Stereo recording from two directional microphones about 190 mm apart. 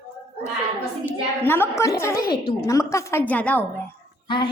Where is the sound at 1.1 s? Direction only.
10° left (ahead or behind).